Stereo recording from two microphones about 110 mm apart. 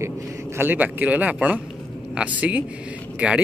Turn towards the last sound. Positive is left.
turn(degrees=-10)  # may be behind; listen again after turning